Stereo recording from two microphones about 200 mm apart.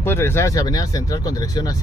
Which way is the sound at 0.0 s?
10° left (ahead or behind).